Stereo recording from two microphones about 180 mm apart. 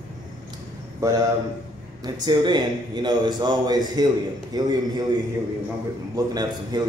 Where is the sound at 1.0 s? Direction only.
15° right (ahead or behind).